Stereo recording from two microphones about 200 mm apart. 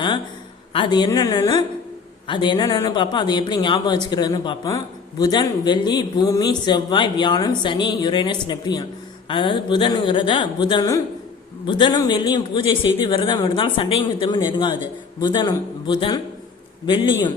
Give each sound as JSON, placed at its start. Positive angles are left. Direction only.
{"t": 0.7, "sound": "speech", "side_deg": 25}